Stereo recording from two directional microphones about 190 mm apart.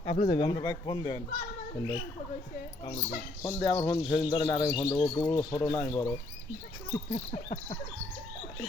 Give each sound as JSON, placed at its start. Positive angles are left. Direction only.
{"t": 0.0, "sound": "speech", "side_deg": 35}
{"t": 2.8, "sound": "cricket", "side_deg": 35}
{"t": 3.4, "sound": "speech", "side_deg": 20}
{"t": 4.1, "sound": "cricket", "side_deg": 30}
{"t": 4.4, "sound": "speech", "side_deg": 15}
{"t": 7.1, "sound": "cricket", "side_deg": 35}